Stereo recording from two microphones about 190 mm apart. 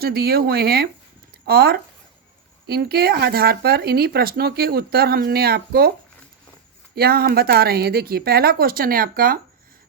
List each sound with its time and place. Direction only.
0.0 s speech: 55° right (ahead or behind)
6.9 s speech: 55° right (ahead or behind)